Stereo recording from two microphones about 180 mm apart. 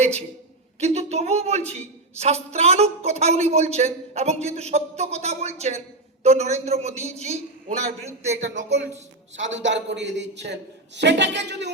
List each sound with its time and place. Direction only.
0.8 s a woman's voice: 35° right (ahead or behind)
9.3 s a man's voice: 90° right; by 11.7 s 75° right (ahead or behind)